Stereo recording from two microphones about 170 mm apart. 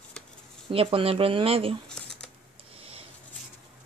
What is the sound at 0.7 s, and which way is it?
Speech, 35° right (ahead or behind).